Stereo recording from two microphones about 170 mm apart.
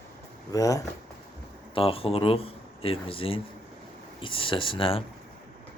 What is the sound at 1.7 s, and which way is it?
Speech, 35° left (ahead or behind).